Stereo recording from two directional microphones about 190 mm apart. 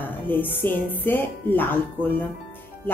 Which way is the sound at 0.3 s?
10° left (ahead or behind).